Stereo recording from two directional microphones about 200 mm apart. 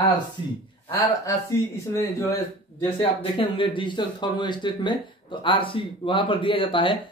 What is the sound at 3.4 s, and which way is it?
Speech, 25° left (ahead or behind).